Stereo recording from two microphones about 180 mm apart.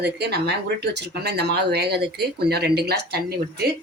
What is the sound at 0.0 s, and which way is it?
Speech, 65° right (ahead or behind).